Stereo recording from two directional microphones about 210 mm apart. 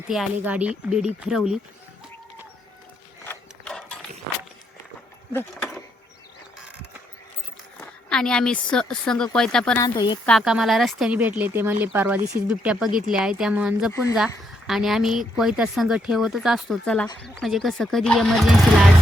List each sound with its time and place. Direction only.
0.1 s speech: 5° right (ahead or behind)
3.2 s mechanisms: 5° left (ahead or behind)
7.8 s speech: 5° left (ahead or behind)
9.8 s speech: 20° left (ahead or behind)
10.2 s speech: centre (ahead or behind)